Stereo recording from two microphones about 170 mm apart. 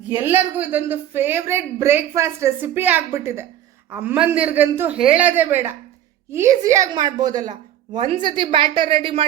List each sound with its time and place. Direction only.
0.1 s a woman's voice: 10° right (ahead or behind); by 9.2 s 30° right (ahead or behind)